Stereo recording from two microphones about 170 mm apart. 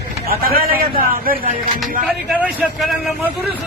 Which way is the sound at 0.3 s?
60° right (ahead or behind).